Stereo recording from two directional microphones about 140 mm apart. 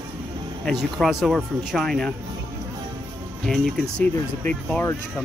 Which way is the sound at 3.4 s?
5° left (ahead or behind).